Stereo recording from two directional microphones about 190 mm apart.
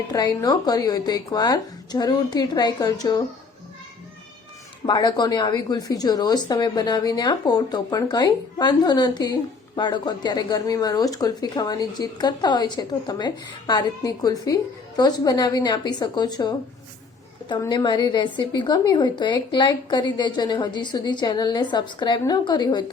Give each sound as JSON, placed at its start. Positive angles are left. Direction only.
{"t": 0.1, "sound": "a woman's voice", "side_deg": 20}
{"t": 4.9, "sound": "a woman's voice", "side_deg": 20}